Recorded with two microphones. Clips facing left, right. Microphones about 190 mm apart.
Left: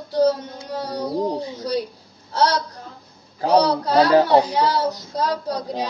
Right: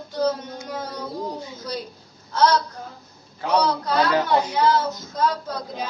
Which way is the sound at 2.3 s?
35° left (ahead or behind).